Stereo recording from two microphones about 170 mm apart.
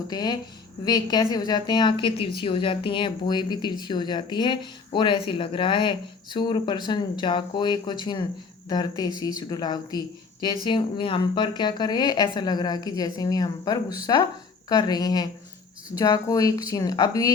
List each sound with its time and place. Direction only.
0.1 s a woman's voice: 25° left (ahead or behind)